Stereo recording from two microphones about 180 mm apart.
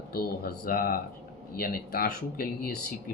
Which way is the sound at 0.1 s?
55° left (ahead or behind).